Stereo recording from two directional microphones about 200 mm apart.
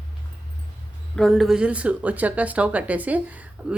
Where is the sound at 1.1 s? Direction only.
Centre (ahead or behind).